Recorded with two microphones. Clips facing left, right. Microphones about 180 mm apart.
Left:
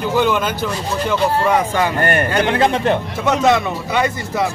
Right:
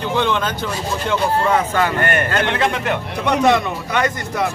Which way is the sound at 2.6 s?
35° left (ahead or behind).